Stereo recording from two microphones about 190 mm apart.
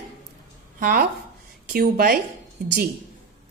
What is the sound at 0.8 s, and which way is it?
Speech, 50° right (ahead or behind).